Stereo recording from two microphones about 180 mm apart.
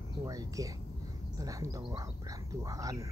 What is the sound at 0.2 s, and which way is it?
Speech, 20° right (ahead or behind).